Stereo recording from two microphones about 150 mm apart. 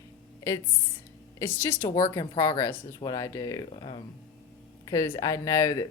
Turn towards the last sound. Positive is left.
turn(degrees=20)  # may be behind; listen again after turning